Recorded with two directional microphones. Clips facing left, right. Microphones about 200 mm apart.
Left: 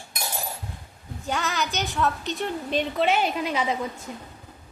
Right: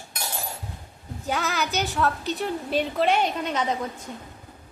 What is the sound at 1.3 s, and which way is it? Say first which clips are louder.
A woman's voice: right 1 dB; centre (ahead or behind).